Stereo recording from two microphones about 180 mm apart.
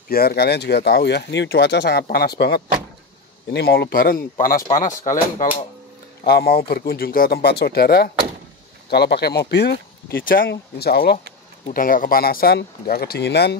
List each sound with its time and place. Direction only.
0.1 s speech: 60° left (ahead or behind)
4.7 s speech: 45° left (ahead or behind)
6.2 s speech: 60° left (ahead or behind)
10.4 s speech: 70° left (ahead or behind)
11.6 s speech: 50° left (ahead or behind); by 13.6 s 70° left (ahead or behind)